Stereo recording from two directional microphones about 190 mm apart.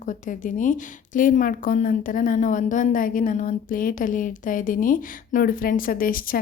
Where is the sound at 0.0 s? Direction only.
40° left (ahead or behind).